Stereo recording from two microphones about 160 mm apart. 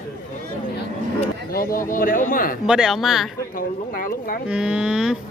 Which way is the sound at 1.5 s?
60° left (ahead or behind).